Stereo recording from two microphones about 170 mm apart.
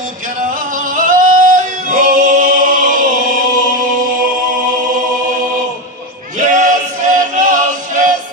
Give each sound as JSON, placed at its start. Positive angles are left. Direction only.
{"t": 0.7, "sound": "singing", "side_deg": -50}
{"t": 6.4, "sound": "music", "side_deg": -50}